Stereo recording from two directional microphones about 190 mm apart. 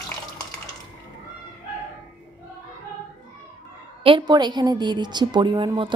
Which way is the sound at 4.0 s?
25° right (ahead or behind).